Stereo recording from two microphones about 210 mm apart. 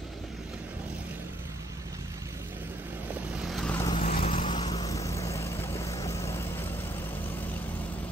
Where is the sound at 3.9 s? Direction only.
30° left (ahead or behind).